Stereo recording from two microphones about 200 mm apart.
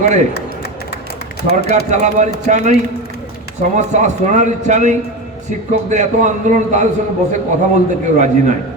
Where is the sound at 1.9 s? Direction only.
35° right (ahead or behind).